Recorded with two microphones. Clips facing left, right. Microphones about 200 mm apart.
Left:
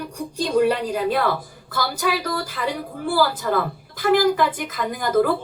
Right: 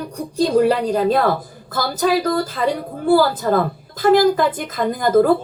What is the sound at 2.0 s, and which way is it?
A woman's voice, 50° right (ahead or behind).